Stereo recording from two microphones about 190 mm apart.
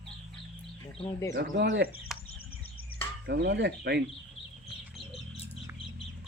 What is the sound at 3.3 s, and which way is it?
Speech, 60° right (ahead or behind).